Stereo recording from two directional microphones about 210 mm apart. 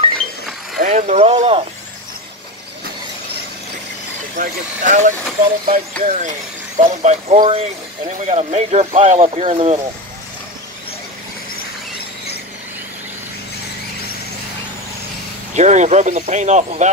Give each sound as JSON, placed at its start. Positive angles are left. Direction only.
{"t": 0.7, "sound": "speech", "side_deg": -35}
{"t": 4.4, "sound": "speech", "side_deg": -35}
{"t": 15.5, "sound": "speech", "side_deg": -35}